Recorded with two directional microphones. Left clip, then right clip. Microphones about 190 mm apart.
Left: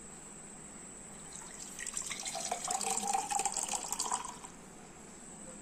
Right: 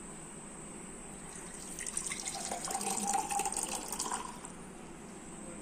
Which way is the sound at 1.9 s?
15° left (ahead or behind).